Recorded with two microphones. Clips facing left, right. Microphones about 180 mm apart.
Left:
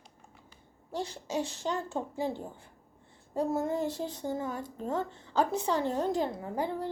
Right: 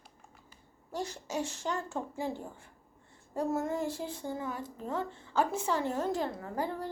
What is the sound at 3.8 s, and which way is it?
Speech, 10° right (ahead or behind).